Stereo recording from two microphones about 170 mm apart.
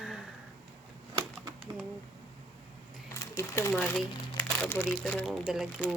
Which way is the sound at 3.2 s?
15° left (ahead or behind).